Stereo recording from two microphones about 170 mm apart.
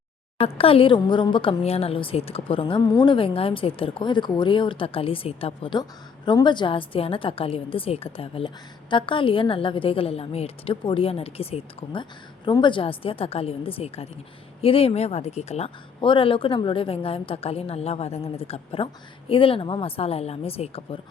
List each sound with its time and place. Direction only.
0.3 s a woman's voice: 35° left (ahead or behind)